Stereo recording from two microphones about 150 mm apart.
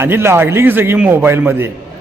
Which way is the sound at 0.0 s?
15° right (ahead or behind).